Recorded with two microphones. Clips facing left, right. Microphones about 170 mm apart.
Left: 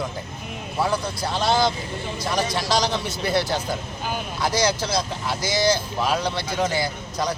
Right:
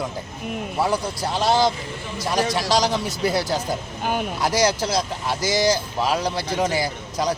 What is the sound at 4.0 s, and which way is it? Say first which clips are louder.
Speech: right 5 dB; 60° right (ahead or behind).